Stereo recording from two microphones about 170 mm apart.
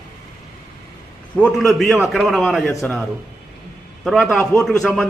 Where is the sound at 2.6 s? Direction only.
15° left (ahead or behind).